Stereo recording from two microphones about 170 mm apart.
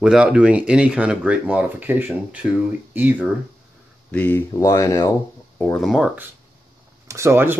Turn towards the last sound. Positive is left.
turn(degrees=-15)  # may be behind; listen again after turning